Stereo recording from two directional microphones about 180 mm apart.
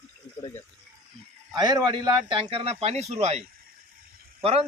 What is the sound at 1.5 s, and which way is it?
A man's voice, 20° right (ahead or behind).